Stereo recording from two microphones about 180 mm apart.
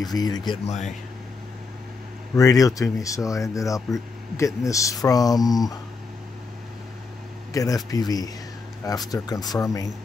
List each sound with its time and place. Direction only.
0.0 s speech: 20° left (ahead or behind)
0.7 s speech: 40° left (ahead or behind)
2.3 s speech: 20° left (ahead or behind)
7.5 s speech: 20° left (ahead or behind)